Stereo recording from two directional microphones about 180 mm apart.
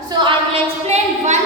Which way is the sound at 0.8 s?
40° right (ahead or behind).